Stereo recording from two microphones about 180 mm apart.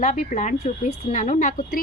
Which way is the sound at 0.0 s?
45° left (ahead or behind).